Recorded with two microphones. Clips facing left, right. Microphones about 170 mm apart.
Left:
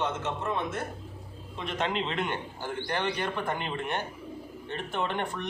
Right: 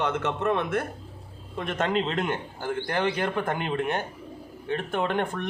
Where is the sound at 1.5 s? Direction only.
50° right (ahead or behind).